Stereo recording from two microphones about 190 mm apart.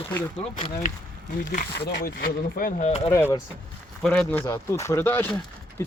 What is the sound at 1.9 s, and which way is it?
Speech, 55° left (ahead or behind).